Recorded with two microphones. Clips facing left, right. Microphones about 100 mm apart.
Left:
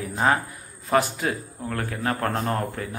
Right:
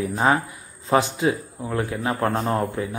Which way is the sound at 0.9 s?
20° right (ahead or behind).